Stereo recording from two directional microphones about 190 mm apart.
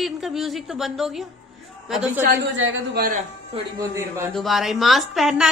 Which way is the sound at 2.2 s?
75° right (ahead or behind).